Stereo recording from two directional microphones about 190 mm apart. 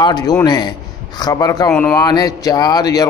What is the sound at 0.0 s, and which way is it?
Speech, 20° left (ahead or behind).